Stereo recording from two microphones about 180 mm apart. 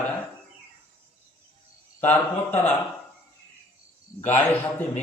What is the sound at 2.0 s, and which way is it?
Speech, 10° left (ahead or behind).